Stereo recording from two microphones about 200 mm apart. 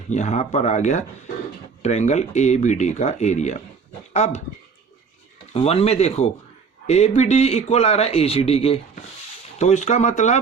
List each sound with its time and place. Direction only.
0.1 s a man's voice: 35° left (ahead or behind)
5.5 s a man's voice: 30° left (ahead or behind)